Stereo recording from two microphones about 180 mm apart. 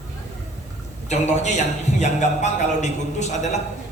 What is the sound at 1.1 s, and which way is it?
A man's voice, 40° left (ahead or behind).